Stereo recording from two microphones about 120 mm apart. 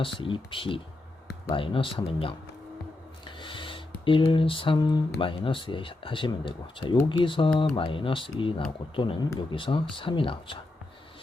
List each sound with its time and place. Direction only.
0.0 s speech: 45° left (ahead or behind)
3.3 s a sound: 45° left (ahead or behind)
7.1 s speech: 45° left (ahead or behind)